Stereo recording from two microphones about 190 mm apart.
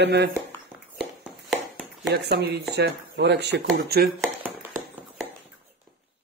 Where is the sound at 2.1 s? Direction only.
60° right (ahead or behind).